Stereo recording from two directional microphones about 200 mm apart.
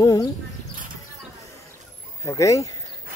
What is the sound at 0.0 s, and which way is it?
Speech, 15° left (ahead or behind).